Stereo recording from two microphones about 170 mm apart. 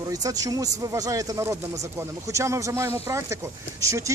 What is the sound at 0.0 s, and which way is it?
A man's voice, 20° right (ahead or behind).